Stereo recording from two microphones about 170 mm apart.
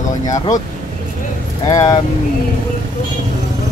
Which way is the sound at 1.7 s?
20° left (ahead or behind).